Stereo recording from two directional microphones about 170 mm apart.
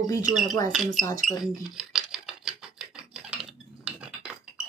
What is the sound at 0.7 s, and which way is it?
Speech, centre (ahead or behind).